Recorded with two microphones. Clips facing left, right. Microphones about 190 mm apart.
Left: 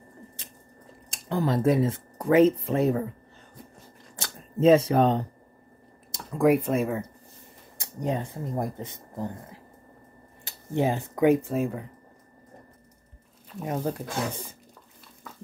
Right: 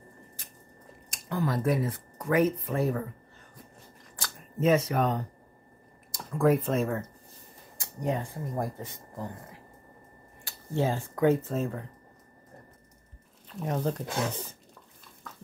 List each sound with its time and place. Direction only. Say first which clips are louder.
1.1 s speech: left 4 dB; 30° left (ahead or behind)
4.2 s speech: left 6 dB; 30° left (ahead or behind)
6.1 s speech: left 3 dB; 15° left (ahead or behind)
7.7 s speech: left 2 dB; 20° left (ahead or behind)
13.6 s speech: left 1 dB; 5° left (ahead or behind)
15.3 s a sound: left 2 dB; 10° left (ahead or behind)